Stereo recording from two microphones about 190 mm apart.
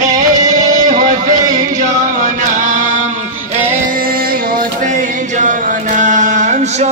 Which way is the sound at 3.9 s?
50° right (ahead or behind).